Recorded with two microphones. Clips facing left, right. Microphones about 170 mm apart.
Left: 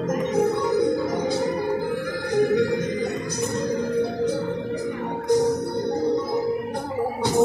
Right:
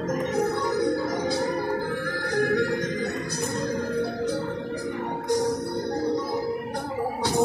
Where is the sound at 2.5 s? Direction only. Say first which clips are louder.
Left 3 dB; 20° left (ahead or behind).